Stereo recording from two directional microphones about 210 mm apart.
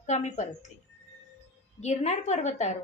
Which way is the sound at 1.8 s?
35° left (ahead or behind).